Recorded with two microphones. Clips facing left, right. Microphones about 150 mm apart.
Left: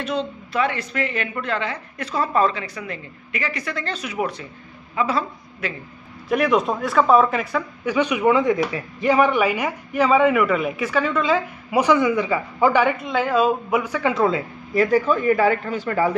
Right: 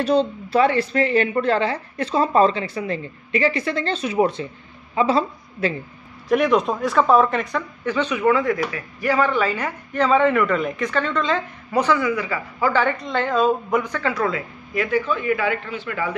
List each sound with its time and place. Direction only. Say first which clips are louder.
0.0 s a woman's voice: right 7 dB; 35° right (ahead or behind)
6.2 s speech: right 1 dB; centre (ahead or behind); by 12.8 s 20° left (ahead or behind)
12.8 s speech: left 1 dB; 5° left (ahead or behind)
14.1 s speech: left 5 dB; 25° left (ahead or behind)
14.7 s speech: left 4 dB; 40° left (ahead or behind)